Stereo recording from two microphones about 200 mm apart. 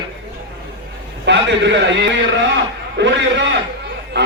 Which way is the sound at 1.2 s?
60° right (ahead or behind).